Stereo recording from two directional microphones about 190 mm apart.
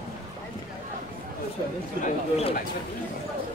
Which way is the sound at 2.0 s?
30° left (ahead or behind).